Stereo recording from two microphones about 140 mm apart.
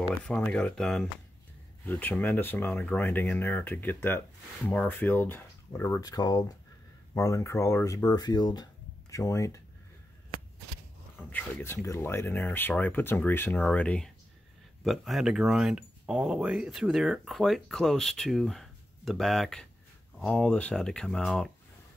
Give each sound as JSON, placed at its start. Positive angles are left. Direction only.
{"t": 0.2, "sound": "speech", "side_deg": 10}
{"t": 11.3, "sound": "speech", "side_deg": 20}